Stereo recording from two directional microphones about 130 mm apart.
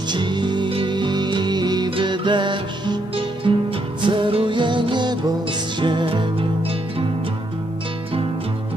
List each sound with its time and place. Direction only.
0.1 s music: 35° right (ahead or behind)